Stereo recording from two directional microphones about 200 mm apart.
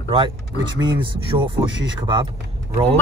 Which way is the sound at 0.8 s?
25° right (ahead or behind).